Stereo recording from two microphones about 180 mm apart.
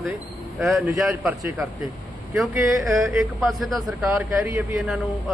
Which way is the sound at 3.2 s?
Centre (ahead or behind).